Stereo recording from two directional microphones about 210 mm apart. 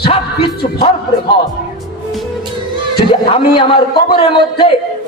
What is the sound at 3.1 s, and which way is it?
A man's voice, 25° left (ahead or behind).